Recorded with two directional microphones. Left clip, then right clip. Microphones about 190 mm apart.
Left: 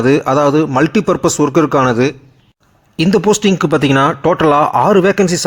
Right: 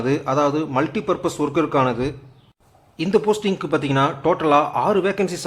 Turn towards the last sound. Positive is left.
turn(degrees=30)  # may be behind; listen again after turning